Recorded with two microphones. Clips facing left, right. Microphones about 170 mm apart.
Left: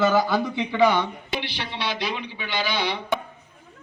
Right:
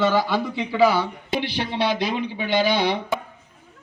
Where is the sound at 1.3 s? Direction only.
50° right (ahead or behind).